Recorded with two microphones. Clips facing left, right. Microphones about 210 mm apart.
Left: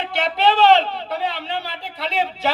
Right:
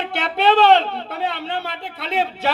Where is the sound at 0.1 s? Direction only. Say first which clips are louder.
Right 1 dB; 60° right (ahead or behind).